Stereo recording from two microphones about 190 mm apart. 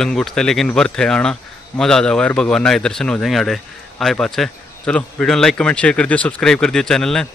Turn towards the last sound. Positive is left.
turn(degrees=5)  # may be behind; listen again after turning